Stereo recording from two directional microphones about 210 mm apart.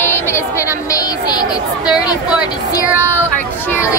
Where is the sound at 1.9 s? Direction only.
5° right (ahead or behind).